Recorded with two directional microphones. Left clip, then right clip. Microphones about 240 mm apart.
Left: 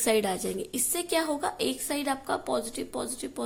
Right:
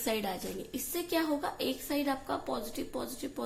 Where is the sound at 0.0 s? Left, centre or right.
Left.